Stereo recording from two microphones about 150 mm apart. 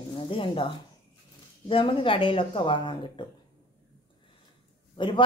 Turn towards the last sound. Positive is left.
turn(degrees=35)  # may be behind; listen again after turning